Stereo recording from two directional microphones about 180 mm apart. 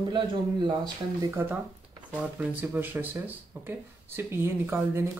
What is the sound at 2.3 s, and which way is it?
Speech, 10° right (ahead or behind).